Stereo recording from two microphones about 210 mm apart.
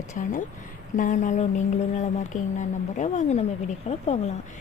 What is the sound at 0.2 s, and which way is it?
Speech, 40° left (ahead or behind).